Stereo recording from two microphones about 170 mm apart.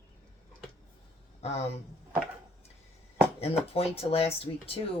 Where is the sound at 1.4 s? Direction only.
40° left (ahead or behind).